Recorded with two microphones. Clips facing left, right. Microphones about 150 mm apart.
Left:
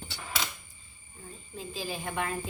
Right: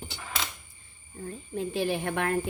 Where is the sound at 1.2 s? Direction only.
55° right (ahead or behind).